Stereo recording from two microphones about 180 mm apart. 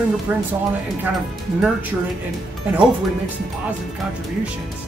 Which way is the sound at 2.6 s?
10° right (ahead or behind).